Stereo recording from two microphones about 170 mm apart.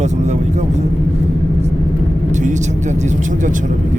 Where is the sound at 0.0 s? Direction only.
45° right (ahead or behind).